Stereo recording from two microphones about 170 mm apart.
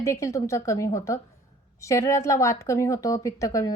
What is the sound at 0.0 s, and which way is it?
A woman's voice, 15° left (ahead or behind).